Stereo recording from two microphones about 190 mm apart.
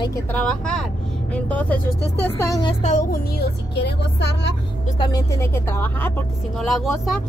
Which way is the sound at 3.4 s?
60° left (ahead or behind).